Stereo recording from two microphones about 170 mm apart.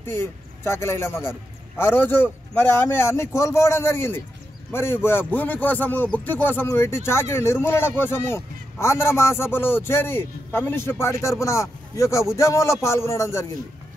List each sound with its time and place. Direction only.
0.0 s speech: 15° left (ahead or behind)